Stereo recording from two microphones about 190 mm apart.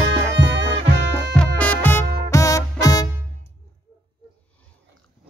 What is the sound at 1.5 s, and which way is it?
Music, 10° left (ahead or behind).